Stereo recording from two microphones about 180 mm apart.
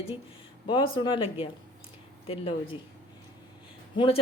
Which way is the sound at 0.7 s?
25° left (ahead or behind).